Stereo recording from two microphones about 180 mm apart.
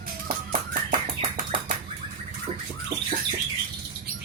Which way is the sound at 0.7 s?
50° right (ahead or behind).